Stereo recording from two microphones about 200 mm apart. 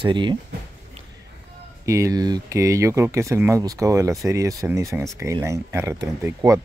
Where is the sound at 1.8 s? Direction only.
15° right (ahead or behind).